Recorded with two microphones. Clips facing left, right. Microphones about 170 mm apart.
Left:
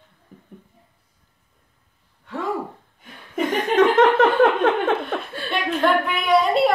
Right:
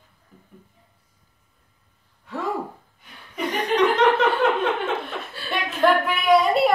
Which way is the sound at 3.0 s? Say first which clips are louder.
Left 4 dB; 50° left (ahead or behind).